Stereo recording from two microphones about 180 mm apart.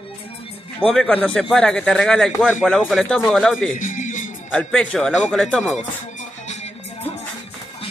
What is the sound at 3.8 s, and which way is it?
Music, 45° left (ahead or behind).